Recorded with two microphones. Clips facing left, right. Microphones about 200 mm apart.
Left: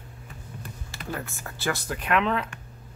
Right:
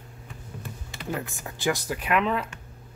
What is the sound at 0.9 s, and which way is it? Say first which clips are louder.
Speech: right 2 dB; 15° right (ahead or behind).